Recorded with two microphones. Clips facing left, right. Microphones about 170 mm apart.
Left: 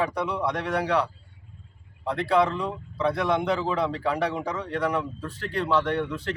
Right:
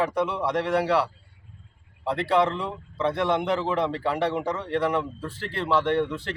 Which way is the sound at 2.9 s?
Centre (ahead or behind).